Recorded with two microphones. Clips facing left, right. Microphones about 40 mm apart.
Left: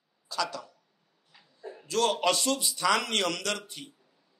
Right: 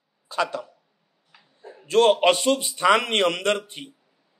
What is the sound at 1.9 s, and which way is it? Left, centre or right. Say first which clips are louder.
A man's voice: right 9 dB; right.